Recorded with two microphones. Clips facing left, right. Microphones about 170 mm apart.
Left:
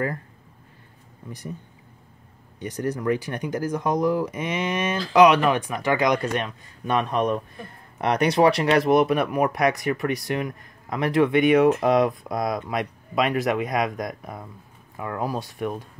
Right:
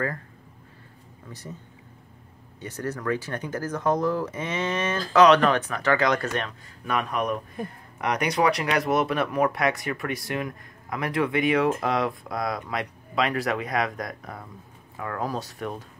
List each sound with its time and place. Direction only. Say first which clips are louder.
2.6 s speech: left 4 dB; 15° left (ahead or behind)
6.9 s speech: left 4 dB; 30° left (ahead or behind)